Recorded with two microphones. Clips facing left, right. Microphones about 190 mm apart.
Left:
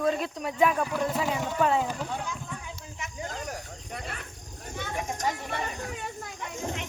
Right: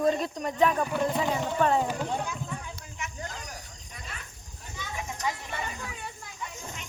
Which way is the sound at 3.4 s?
60° left (ahead or behind).